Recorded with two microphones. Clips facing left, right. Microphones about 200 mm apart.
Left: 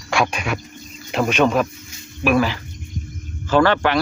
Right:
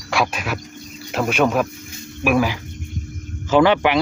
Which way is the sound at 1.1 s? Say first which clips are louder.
Left 1 dB; 5° right (ahead or behind).